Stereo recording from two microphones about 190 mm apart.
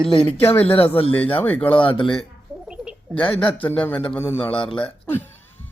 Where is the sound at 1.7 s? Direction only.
25° left (ahead or behind).